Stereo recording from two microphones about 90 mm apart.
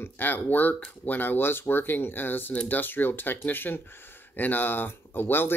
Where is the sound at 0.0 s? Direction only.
20° left (ahead or behind).